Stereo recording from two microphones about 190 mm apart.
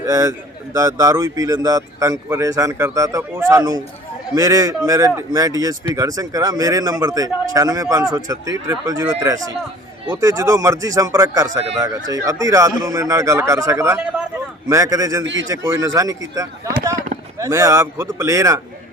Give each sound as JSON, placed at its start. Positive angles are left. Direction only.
{"t": 0.0, "sound": "speech", "side_deg": -20}
{"t": 10.1, "sound": "speech", "side_deg": -20}
{"t": 15.2, "sound": "speech", "side_deg": -75}
{"t": 15.4, "sound": "speech", "side_deg": -20}